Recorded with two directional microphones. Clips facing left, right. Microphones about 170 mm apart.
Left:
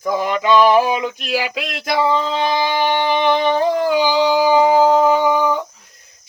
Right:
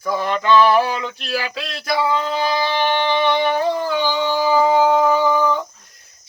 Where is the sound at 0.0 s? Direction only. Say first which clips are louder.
Left 2 dB; 15° left (ahead or behind).